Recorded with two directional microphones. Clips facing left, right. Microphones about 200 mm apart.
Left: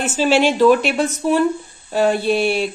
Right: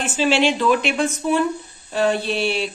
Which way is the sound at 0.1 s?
45° left (ahead or behind).